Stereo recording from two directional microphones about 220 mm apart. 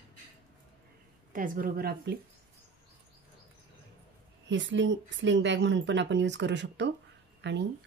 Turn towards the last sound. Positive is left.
turn(degrees=-55)  # may be behind; listen again after turning